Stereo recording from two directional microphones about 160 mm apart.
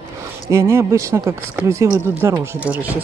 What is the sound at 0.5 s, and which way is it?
Speech, 15° right (ahead or behind).